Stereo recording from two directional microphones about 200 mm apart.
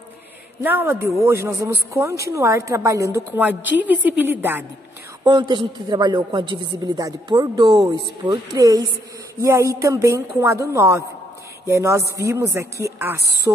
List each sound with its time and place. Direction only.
0.6 s a woman's voice: 10° right (ahead or behind)
5.2 s a man's voice: 25° right (ahead or behind)